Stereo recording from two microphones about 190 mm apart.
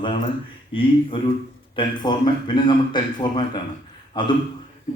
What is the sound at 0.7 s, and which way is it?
A man's voice, 30° left (ahead or behind).